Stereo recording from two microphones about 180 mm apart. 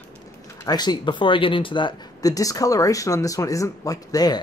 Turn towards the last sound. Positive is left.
turn(degrees=20)  # may be behind; listen again after turning